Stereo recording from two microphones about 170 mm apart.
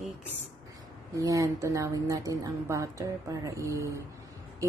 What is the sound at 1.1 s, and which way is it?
Speech, 20° right (ahead or behind).